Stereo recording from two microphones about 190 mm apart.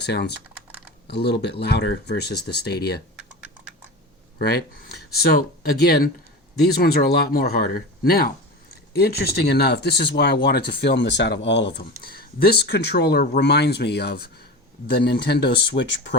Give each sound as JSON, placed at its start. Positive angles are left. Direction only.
{"t": 0.0, "sound": "speech", "side_deg": 60}
{"t": 3.2, "sound": "typing", "side_deg": -5}
{"t": 4.4, "sound": "speech", "side_deg": 55}